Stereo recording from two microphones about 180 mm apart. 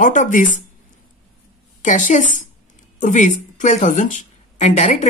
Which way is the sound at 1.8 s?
45° left (ahead or behind).